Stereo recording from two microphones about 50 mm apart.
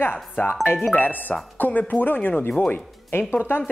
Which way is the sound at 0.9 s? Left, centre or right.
Left.